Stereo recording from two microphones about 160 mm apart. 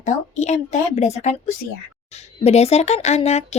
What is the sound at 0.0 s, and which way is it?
Speech, 45° left (ahead or behind).